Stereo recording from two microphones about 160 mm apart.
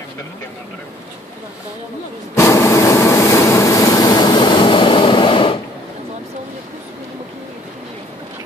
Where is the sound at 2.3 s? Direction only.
20° left (ahead or behind).